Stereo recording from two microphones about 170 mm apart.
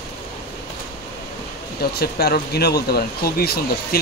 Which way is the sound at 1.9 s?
65° left (ahead or behind).